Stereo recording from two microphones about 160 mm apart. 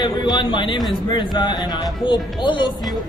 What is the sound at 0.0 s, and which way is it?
Speech, 30° left (ahead or behind).